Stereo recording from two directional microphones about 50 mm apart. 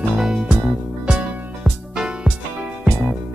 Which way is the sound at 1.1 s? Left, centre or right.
Right.